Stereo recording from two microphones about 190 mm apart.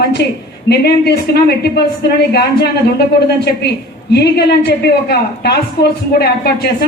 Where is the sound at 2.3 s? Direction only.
55° left (ahead or behind).